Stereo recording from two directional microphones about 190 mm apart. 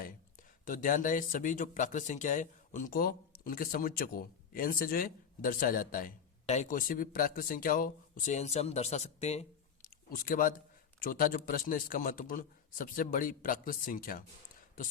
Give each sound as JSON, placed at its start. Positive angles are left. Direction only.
{"t": 0.6, "sound": "speech", "side_deg": 45}
{"t": 6.4, "sound": "a man's voice", "side_deg": 35}